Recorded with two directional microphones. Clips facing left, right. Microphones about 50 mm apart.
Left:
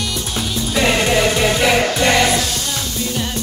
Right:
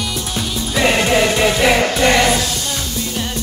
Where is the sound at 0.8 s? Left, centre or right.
Centre.